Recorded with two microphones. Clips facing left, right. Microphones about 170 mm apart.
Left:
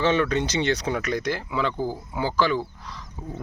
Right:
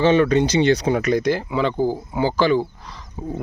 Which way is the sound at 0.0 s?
35° right (ahead or behind).